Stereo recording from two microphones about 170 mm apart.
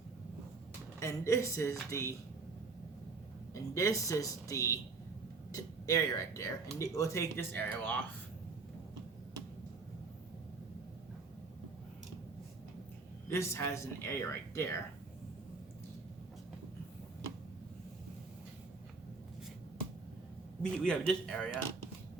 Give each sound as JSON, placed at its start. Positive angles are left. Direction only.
{"t": 0.9, "sound": "speech", "side_deg": 15}
{"t": 3.5, "sound": "speech", "side_deg": 20}
{"t": 5.8, "sound": "speech", "side_deg": 20}
{"t": 13.2, "sound": "speech", "side_deg": 15}
{"t": 20.6, "sound": "a man's voice", "side_deg": 5}